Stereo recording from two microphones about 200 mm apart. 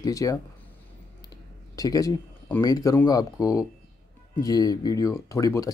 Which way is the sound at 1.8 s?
20° left (ahead or behind).